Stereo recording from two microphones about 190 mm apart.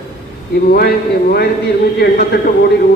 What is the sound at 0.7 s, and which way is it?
A man's voice, 55° left (ahead or behind).